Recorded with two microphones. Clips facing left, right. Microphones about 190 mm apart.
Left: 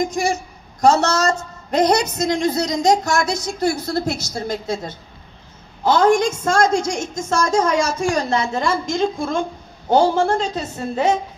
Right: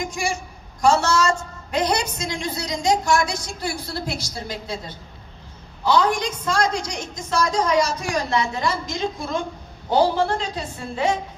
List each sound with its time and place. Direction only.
0.0 s a man's voice: 40° left (ahead or behind)